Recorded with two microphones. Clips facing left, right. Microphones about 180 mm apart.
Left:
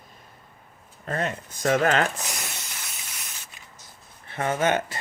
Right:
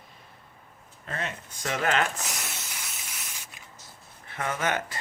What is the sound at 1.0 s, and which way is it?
Speech, 45° left (ahead or behind).